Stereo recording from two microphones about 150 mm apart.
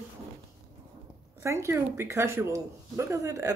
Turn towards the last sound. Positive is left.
turn(degrees=-20)  # may be behind; listen again after turning